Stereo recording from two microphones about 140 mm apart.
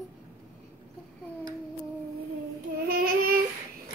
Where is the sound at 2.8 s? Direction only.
90° right.